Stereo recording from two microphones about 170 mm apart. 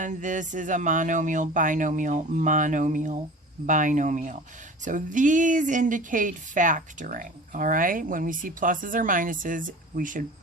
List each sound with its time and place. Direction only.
0.0 s speech: 45° right (ahead or behind)